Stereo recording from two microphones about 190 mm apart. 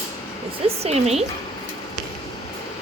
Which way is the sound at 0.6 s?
35° right (ahead or behind).